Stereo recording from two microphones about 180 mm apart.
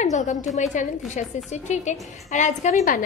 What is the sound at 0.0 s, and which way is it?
A woman's voice, 40° left (ahead or behind).